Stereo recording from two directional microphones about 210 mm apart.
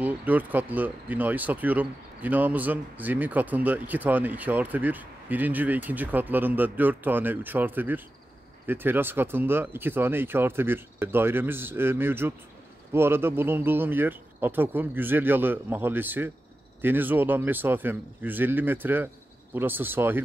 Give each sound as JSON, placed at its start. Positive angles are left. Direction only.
{"t": 0.0, "sound": "speech", "side_deg": -10}